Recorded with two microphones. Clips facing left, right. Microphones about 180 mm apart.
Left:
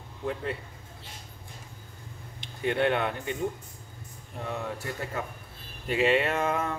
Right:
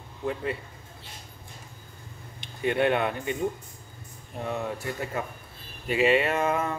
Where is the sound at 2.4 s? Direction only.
10° right (ahead or behind).